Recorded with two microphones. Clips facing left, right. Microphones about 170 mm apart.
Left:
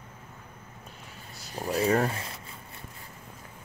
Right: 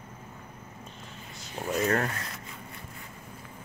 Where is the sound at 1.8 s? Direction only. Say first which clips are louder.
Left 4 dB; 10° left (ahead or behind).